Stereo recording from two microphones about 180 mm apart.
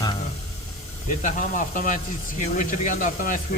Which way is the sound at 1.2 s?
45° left (ahead or behind).